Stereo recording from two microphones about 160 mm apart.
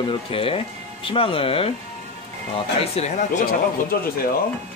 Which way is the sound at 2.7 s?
45° left (ahead or behind).